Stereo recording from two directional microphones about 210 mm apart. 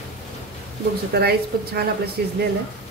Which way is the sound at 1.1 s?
50° right (ahead or behind).